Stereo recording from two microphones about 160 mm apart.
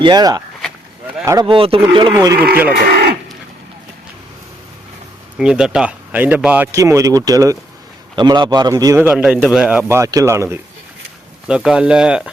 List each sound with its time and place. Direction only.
0.0 s speech: 25° right (ahead or behind)
1.5 s speech: 35° right (ahead or behind)
2.7 s speech: 70° right (ahead or behind)
5.4 s a man's voice: 5° right (ahead or behind)
6.7 s a man's voice: 20° right (ahead or behind)
10.0 s speech: 20° right (ahead or behind)
11.4 s speech: 5° right (ahead or behind)